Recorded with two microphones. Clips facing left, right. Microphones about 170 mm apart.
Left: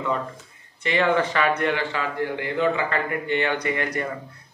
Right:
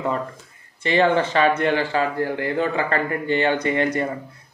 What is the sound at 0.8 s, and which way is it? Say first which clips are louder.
Speech: right 3 dB; 30° right (ahead or behind).